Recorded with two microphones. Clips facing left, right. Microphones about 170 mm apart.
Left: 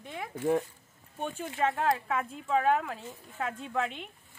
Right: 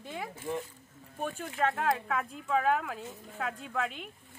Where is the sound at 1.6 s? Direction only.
Centre (ahead or behind).